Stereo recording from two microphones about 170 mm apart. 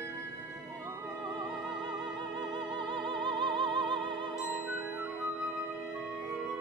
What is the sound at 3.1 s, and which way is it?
Music, 30° right (ahead or behind).